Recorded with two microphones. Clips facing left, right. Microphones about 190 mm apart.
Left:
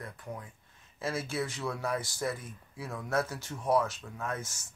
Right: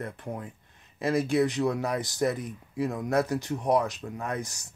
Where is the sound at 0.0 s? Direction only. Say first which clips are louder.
Right 7 dB; 25° right (ahead or behind).